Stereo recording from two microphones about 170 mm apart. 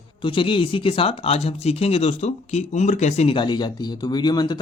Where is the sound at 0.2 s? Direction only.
30° left (ahead or behind).